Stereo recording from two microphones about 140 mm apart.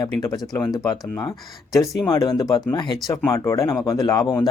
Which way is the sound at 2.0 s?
30° left (ahead or behind).